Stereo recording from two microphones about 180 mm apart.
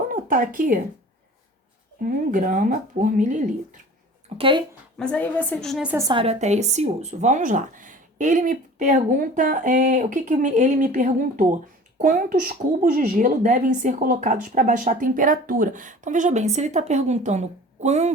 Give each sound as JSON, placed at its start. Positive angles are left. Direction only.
{"t": 0.1, "sound": "speech", "side_deg": -50}
{"t": 2.0, "sound": "speech", "side_deg": -50}
{"t": 4.4, "sound": "speech", "side_deg": -30}
{"t": 4.9, "sound": "a woman's voice", "side_deg": 5}
{"t": 6.0, "sound": "speech", "side_deg": -20}
{"t": 6.2, "sound": "speech", "side_deg": -40}